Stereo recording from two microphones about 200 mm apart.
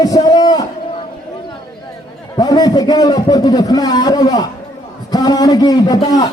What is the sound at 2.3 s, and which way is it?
A man's voice, 20° left (ahead or behind).